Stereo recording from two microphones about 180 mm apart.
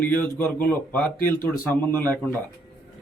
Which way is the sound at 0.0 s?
10° left (ahead or behind).